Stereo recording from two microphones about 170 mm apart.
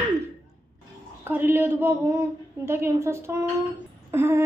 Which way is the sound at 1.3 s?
10° right (ahead or behind).